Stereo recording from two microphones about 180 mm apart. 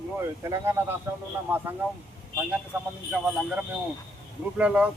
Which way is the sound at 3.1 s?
Centre (ahead or behind).